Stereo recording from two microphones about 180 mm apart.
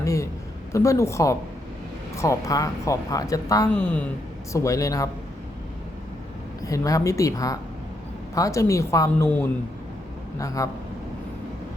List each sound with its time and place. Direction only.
0.0 s a sound: 15° left (ahead or behind)
0.7 s speech: 15° left (ahead or behind)
6.6 s speech: 20° left (ahead or behind)